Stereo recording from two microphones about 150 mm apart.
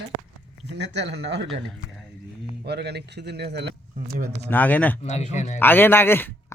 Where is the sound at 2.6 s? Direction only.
90° right.